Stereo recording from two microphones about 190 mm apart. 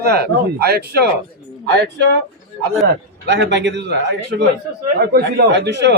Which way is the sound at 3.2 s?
70° right (ahead or behind).